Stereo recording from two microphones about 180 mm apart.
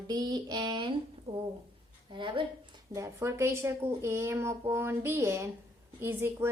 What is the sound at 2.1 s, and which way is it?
Speech, 30° right (ahead or behind).